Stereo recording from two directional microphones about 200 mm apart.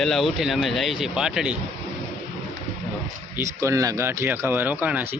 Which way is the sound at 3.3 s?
15° right (ahead or behind).